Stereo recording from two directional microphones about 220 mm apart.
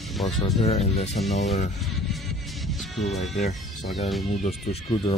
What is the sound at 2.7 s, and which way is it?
Music, centre (ahead or behind).